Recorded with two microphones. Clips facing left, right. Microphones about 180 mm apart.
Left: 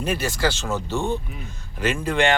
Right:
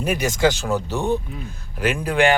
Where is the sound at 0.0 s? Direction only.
15° right (ahead or behind).